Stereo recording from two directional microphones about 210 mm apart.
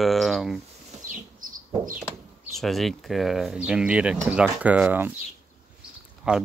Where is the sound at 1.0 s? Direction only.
40° right (ahead or behind).